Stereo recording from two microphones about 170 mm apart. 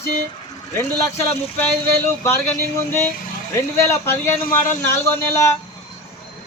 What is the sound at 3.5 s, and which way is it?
A man's voice, 15° left (ahead or behind).